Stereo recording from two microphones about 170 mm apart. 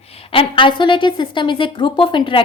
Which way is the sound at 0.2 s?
35° left (ahead or behind).